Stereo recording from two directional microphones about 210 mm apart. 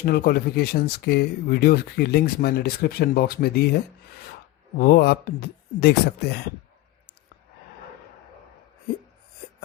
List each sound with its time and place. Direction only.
0.0 s speech: 45° left (ahead or behind)
4.8 s speech: 50° left (ahead or behind)